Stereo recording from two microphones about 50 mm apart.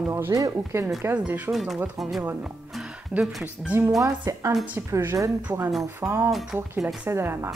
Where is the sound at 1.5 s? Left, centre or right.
Centre.